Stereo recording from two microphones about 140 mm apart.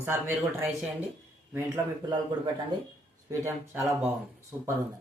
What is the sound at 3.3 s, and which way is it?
Speech, 20° right (ahead or behind).